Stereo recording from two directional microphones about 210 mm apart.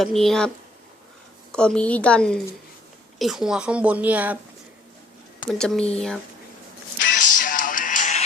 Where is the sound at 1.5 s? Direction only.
5° left (ahead or behind).